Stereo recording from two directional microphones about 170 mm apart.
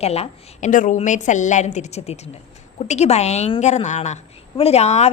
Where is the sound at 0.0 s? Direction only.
40° left (ahead or behind).